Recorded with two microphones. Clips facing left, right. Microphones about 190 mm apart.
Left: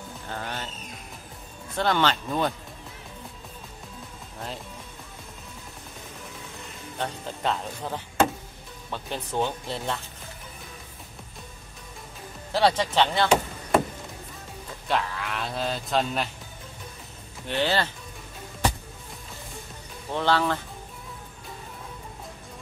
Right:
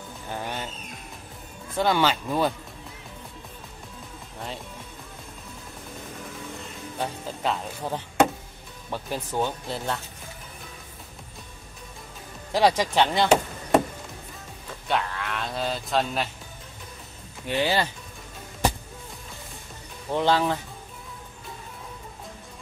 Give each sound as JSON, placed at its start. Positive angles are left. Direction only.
{"t": 0.3, "sound": "speech", "side_deg": -15}
{"t": 1.8, "sound": "speech", "side_deg": -10}
{"t": 7.0, "sound": "speech", "side_deg": -5}
{"t": 8.9, "sound": "speech", "side_deg": -5}
{"t": 12.5, "sound": "speech", "side_deg": -10}
{"t": 14.9, "sound": "speech", "side_deg": 0}
{"t": 17.5, "sound": "speech", "side_deg": -10}
{"t": 20.1, "sound": "speech", "side_deg": -15}